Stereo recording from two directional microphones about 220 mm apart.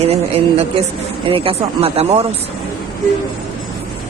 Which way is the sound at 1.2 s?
25° right (ahead or behind).